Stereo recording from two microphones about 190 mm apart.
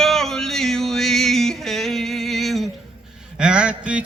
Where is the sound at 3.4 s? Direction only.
5° right (ahead or behind).